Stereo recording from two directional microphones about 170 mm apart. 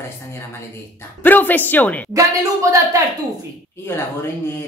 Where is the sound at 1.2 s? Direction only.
10° left (ahead or behind).